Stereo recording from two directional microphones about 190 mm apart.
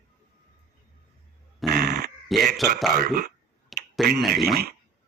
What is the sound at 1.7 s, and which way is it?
Dog, 50° right (ahead or behind).